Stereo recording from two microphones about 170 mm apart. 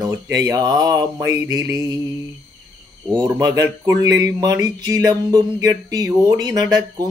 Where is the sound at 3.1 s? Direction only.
20° right (ahead or behind).